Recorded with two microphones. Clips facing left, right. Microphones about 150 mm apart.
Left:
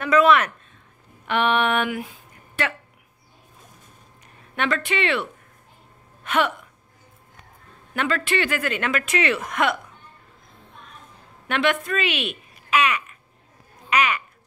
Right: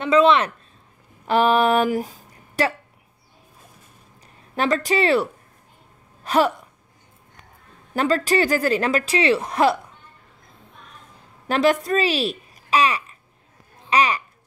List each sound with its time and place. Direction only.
0.0 s speech: 25° right (ahead or behind)
4.6 s a woman's voice: 35° right (ahead or behind)
7.9 s a woman's voice: 35° right (ahead or behind)
11.4 s a child's voice: 35° right (ahead or behind)